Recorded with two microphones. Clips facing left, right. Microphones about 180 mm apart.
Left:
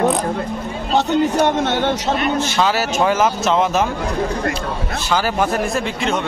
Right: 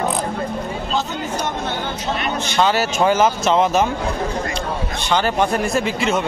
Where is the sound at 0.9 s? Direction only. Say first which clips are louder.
Left 10 dB; 75° left (ahead or behind).